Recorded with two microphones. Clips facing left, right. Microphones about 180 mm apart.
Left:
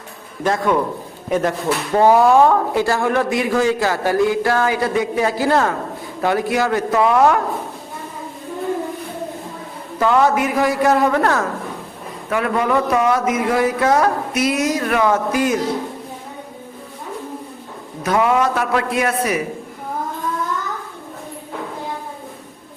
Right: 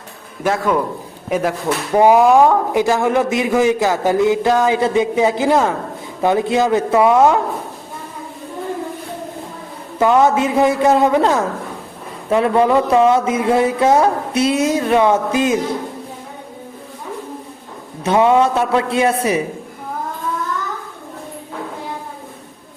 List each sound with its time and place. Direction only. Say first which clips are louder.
0.4 s a man's voice: even; 5° right (ahead or behind); by 7.3 s 20° right (ahead or behind)
10.0 s speech: right 2 dB; 20° right (ahead or behind)
12.3 s speech: right 5 dB; 30° right (ahead or behind)
18.0 s speech: right 4 dB; 25° right (ahead or behind)